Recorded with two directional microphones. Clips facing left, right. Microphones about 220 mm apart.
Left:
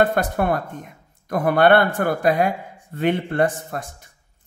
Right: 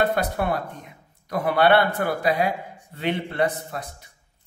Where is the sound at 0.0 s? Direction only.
50° left (ahead or behind).